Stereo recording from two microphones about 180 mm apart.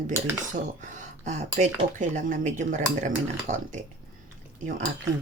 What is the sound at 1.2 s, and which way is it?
Speech, 40° right (ahead or behind).